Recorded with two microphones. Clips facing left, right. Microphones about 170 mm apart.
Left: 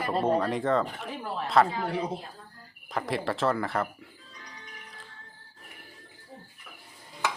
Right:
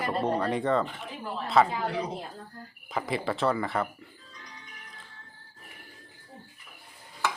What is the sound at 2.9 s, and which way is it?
Speech, centre (ahead or behind).